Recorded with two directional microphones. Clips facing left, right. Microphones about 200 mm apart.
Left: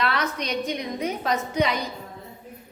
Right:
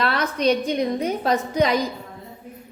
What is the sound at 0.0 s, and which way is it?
A woman's voice, 30° right (ahead or behind).